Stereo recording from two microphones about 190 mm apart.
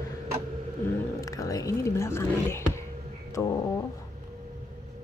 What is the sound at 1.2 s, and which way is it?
Speech, 20° left (ahead or behind).